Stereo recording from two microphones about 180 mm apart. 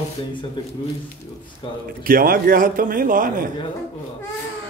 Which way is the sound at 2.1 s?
55° right (ahead or behind).